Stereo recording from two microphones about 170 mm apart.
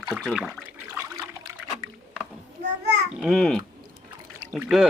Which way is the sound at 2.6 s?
85° right.